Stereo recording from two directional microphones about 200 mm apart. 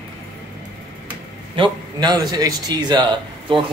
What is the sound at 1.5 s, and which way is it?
A man's voice, 20° right (ahead or behind).